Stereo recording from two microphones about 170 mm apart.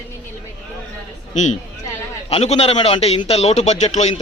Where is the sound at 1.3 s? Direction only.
45° left (ahead or behind).